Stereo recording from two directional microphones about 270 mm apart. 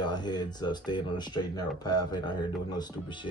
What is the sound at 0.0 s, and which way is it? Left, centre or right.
Speech, centre.